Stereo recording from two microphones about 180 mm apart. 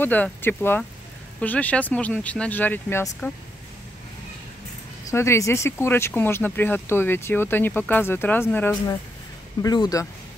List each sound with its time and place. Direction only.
0.0 s speech: 10° left (ahead or behind)
5.1 s speech: 15° left (ahead or behind)
9.6 s speech: 20° left (ahead or behind)